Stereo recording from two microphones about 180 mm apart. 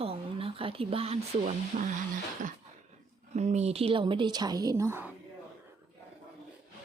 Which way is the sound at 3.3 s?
40° right (ahead or behind).